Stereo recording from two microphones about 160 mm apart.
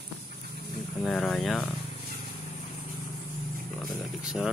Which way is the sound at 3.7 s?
Centre (ahead or behind).